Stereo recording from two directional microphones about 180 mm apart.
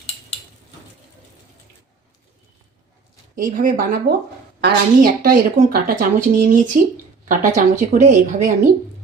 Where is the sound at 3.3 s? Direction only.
50° right (ahead or behind).